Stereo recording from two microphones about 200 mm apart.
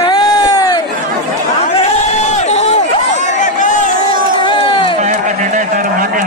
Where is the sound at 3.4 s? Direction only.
40° left (ahead or behind).